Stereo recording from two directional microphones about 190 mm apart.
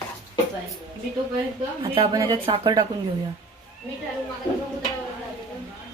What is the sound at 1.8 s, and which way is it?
Speech, 25° right (ahead or behind).